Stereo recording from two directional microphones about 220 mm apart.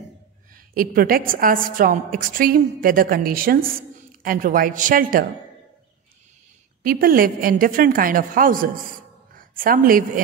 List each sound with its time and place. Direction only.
0.7 s a woman's voice: 40° right (ahead or behind)
6.8 s a woman's voice: 40° right (ahead or behind)